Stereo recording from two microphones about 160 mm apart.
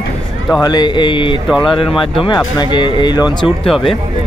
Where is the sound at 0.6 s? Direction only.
25° left (ahead or behind).